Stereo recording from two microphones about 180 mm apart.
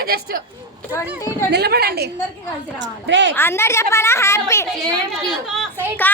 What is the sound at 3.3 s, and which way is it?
A woman's voice, 15° left (ahead or behind).